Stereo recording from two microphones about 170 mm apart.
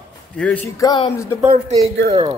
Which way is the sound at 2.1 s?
35° right (ahead or behind).